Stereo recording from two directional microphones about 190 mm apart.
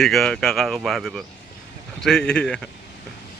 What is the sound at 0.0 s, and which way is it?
Speech, centre (ahead or behind).